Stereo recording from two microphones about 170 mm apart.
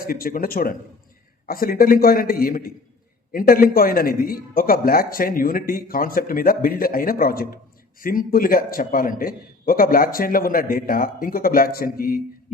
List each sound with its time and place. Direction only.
0.1 s speech: 60° left (ahead or behind)